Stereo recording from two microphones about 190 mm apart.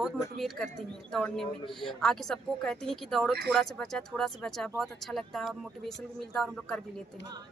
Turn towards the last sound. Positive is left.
turn(degrees=5)  # may be behind; listen again after turning